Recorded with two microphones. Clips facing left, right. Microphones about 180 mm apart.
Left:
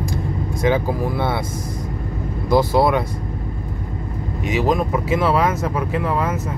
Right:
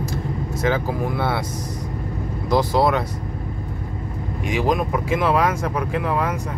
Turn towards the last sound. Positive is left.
turn(degrees=5)  # may be behind; listen again after turning